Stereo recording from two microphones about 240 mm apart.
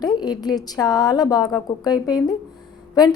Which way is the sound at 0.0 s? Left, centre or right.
Centre.